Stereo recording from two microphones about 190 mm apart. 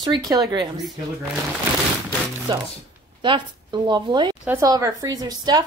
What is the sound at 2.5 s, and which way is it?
A woman's voice, 25° right (ahead or behind).